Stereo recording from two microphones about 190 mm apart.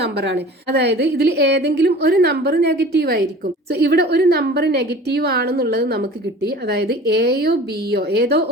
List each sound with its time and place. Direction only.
0.0 s a woman's voice: 60° right (ahead or behind)